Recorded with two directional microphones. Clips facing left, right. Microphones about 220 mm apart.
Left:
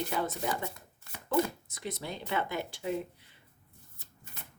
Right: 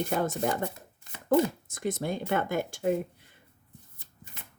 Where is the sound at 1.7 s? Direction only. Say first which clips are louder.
Right 8 dB; 50° right (ahead or behind).